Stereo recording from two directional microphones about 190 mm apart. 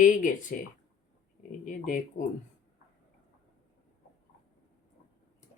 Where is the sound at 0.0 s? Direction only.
45° left (ahead or behind).